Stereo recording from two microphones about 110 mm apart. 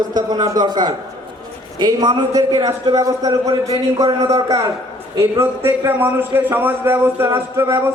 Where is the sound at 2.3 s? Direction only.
35° right (ahead or behind).